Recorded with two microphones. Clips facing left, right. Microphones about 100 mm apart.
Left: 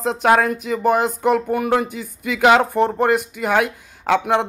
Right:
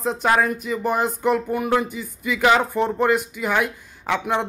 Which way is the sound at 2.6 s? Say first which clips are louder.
Left 3 dB; 50° left (ahead or behind).